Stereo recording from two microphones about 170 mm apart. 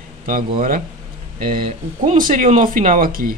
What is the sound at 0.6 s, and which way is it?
Speech, 55° right (ahead or behind).